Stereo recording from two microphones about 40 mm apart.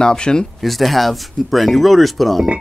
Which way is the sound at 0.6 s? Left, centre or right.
Centre.